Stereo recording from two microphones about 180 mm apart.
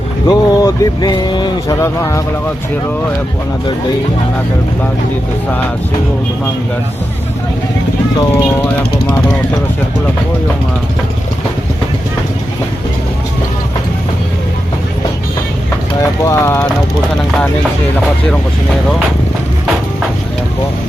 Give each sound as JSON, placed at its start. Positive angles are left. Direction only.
{"t": 0.3, "sound": "speech", "side_deg": 20}
{"t": 16.2, "sound": "speech", "side_deg": 15}